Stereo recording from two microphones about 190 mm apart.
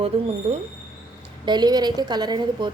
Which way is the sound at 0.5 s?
35° right (ahead or behind).